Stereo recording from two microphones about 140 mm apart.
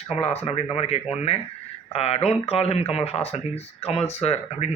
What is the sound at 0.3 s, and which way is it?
Speech, 50° left (ahead or behind).